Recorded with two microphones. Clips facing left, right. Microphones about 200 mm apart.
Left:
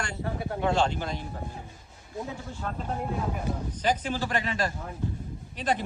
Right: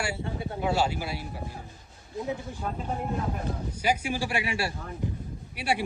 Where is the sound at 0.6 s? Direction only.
5° right (ahead or behind).